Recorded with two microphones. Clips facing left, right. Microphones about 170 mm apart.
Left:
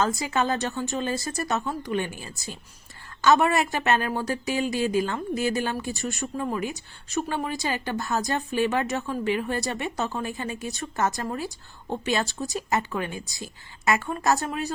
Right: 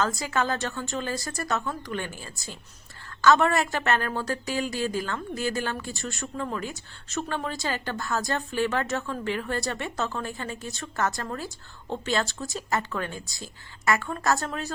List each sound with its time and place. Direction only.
0.0 s a woman's voice: 20° left (ahead or behind)